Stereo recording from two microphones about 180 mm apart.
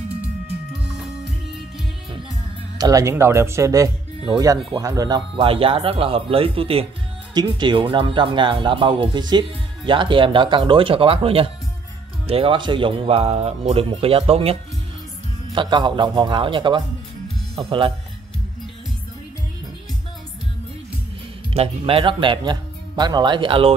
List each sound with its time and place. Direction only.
0.8 s music: 5° right (ahead or behind)
2.8 s speech: 20° right (ahead or behind)
21.5 s speech: 30° right (ahead or behind)